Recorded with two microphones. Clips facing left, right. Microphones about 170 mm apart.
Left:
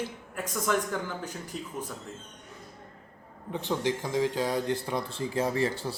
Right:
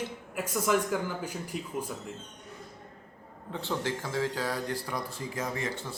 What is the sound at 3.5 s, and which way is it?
Speech, 15° left (ahead or behind).